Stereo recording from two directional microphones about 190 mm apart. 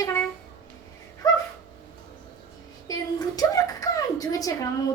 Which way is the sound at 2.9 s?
20° left (ahead or behind).